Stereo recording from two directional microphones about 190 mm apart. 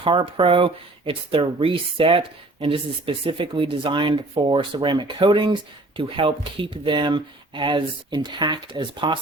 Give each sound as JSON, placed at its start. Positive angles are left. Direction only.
{"t": 0.0, "sound": "speech", "side_deg": -25}